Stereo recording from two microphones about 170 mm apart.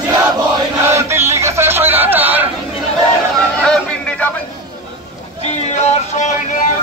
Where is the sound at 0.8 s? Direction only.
15° right (ahead or behind).